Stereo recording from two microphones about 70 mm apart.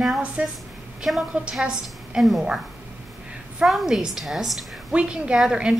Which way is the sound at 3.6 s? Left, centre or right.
Centre.